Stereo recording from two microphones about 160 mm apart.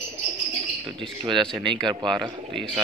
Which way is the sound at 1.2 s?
30° right (ahead or behind).